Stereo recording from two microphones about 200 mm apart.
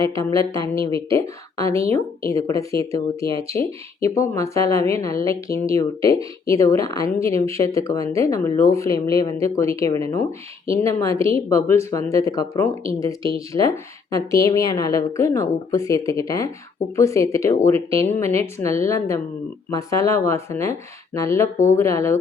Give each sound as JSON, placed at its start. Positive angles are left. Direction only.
{"t": 0.0, "sound": "speech", "side_deg": 15}